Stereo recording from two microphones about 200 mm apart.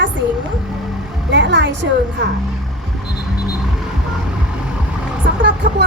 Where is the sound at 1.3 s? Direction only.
60° right (ahead or behind).